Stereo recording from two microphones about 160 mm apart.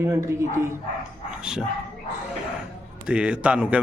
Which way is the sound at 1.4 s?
5° right (ahead or behind).